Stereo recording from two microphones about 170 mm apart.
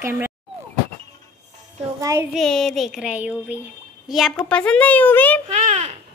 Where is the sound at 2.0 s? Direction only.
15° right (ahead or behind).